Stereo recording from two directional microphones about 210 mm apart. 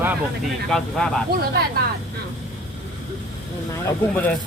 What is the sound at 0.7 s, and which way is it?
Speech, 5° left (ahead or behind).